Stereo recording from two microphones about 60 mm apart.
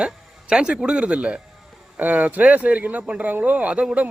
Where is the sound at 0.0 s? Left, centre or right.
Centre.